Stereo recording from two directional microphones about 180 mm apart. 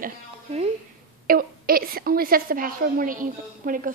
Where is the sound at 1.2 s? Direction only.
55° right (ahead or behind).